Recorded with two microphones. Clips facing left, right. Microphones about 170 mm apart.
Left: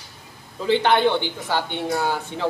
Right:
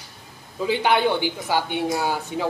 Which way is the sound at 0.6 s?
10° right (ahead or behind).